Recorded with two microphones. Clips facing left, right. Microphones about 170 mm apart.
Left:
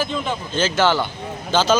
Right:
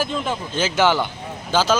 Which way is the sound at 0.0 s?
5° right (ahead or behind).